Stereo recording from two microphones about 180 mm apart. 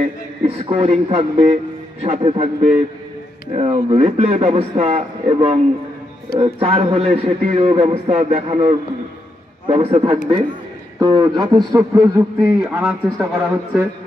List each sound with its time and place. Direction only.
0.0 s a man's voice: 35° right (ahead or behind)
12.4 s a man's voice: 5° right (ahead or behind)